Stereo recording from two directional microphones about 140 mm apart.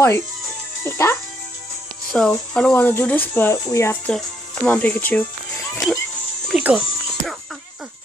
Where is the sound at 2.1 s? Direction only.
5° left (ahead or behind); by 4.0 s 20° left (ahead or behind).